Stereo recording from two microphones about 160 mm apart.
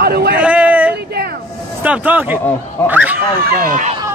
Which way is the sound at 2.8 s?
10° left (ahead or behind).